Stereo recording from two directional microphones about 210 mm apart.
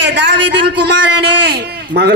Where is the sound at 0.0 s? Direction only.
55° right (ahead or behind).